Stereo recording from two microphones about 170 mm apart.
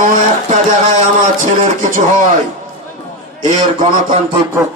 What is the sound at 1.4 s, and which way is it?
Speech, 50° right (ahead or behind).